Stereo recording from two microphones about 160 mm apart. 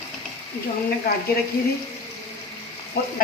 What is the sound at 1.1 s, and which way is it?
Speech, 75° left (ahead or behind).